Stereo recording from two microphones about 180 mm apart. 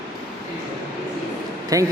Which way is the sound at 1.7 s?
20° right (ahead or behind).